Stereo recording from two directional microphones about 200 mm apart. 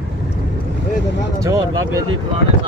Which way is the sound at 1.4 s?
15° right (ahead or behind).